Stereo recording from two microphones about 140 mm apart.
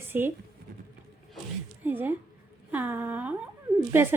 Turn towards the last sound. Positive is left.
turn(degrees=-15)  # may be behind; listen again after turning